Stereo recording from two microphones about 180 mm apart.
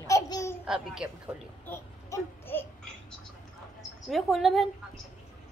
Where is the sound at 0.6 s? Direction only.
5° right (ahead or behind).